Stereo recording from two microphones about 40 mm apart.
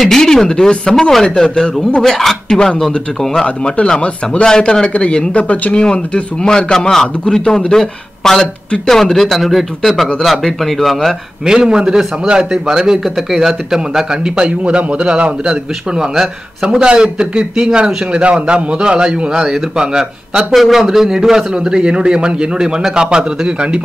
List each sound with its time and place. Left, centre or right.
0.0 s a man's voice: centre
2.0 s a man's voice: centre
4.0 s speech: left
5.8 s a man's voice: left; by 11.1 s centre
11.4 s a man's voice: centre
14.6 s a man's voice: right
20.5 s a man's voice: centre; by 23.8 s right